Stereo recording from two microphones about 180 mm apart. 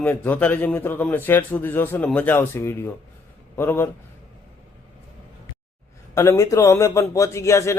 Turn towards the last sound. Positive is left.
turn(degrees=15)  # may be behind; listen again after turning